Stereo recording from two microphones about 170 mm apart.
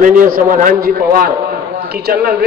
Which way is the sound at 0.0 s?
50° right (ahead or behind).